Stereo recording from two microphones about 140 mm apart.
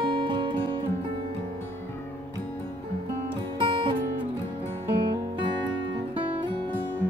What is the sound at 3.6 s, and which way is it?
Music, 35° right (ahead or behind).